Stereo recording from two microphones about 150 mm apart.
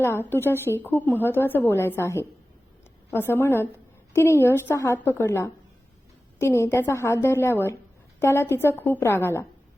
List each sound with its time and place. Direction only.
0.0 s a woman's voice: 15° left (ahead or behind)